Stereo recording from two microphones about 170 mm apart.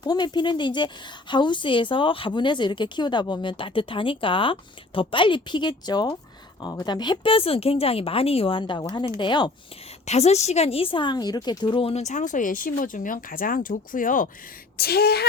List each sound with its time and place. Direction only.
0.0 s a woman's voice: 25° left (ahead or behind)
10.1 s speech: 40° left (ahead or behind)
14.8 s speech: 65° left (ahead or behind)